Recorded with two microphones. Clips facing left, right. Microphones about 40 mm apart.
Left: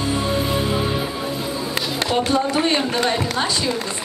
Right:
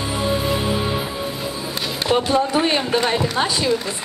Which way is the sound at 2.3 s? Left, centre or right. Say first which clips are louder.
Right 1 dB; centre.